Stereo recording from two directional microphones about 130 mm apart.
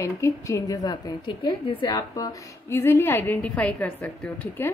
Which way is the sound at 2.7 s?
20° left (ahead or behind).